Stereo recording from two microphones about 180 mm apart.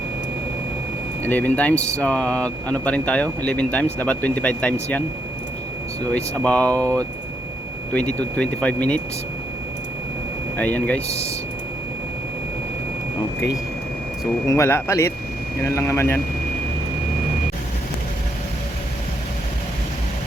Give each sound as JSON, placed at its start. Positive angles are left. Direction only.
{"t": 1.2, "sound": "speech", "side_deg": 10}
{"t": 6.1, "sound": "speech", "side_deg": 10}
{"t": 10.6, "sound": "speech", "side_deg": 10}
{"t": 14.4, "sound": "speech", "side_deg": 15}